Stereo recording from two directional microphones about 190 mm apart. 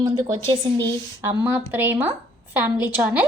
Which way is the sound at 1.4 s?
10° right (ahead or behind).